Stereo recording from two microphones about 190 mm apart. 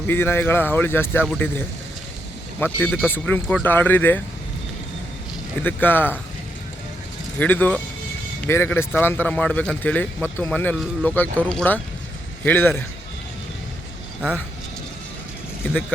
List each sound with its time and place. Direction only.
0.1 s a man's voice: 10° left (ahead or behind)
2.6 s a man's voice: 10° left (ahead or behind)
5.6 s a man's voice: 10° left (ahead or behind)
7.3 s a man's voice: 10° left (ahead or behind)